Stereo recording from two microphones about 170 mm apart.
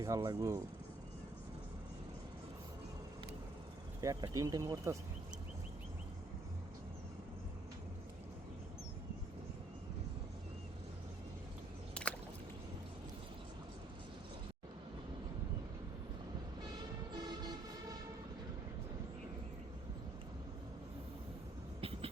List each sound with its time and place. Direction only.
0.0 s speech: 20° right (ahead or behind)
4.0 s speech: 20° right (ahead or behind)
12.0 s a sound: 5° left (ahead or behind)
17.1 s vehicle: 25° right (ahead or behind)
21.8 s vehicle: 35° right (ahead or behind)